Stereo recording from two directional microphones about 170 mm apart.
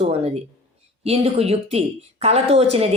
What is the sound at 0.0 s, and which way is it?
A woman's voice, 35° right (ahead or behind).